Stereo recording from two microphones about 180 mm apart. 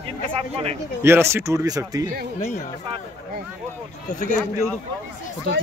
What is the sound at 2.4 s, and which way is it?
Speech, 40° left (ahead or behind).